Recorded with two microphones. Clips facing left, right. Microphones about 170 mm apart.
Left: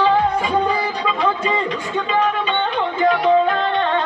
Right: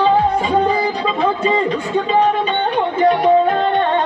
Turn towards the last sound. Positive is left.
turn(degrees=-40)  # may be behind; listen again after turning